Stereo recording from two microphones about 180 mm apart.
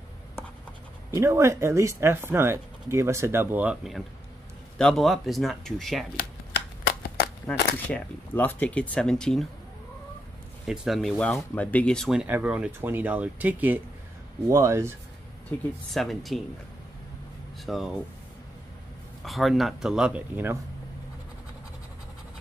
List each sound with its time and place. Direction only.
1.1 s speech: 15° right (ahead or behind); by 6.0 s centre (ahead or behind)
7.4 s speech: 10° left (ahead or behind)
10.6 s speech: centre (ahead or behind)
15.5 s speech: 10° left (ahead or behind)
17.6 s speech: centre (ahead or behind)
19.2 s speech: centre (ahead or behind)